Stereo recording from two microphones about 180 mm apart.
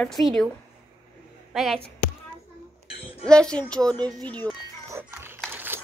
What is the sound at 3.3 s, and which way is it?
Speech, 5° left (ahead or behind).